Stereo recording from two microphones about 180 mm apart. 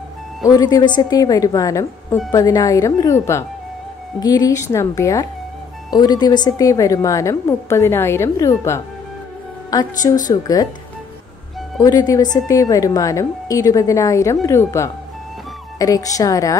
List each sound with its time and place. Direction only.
0.5 s a woman's voice: 20° left (ahead or behind)
11.8 s a woman's voice: 20° left (ahead or behind)